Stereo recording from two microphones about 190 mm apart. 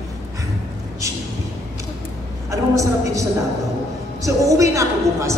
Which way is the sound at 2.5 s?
15° right (ahead or behind).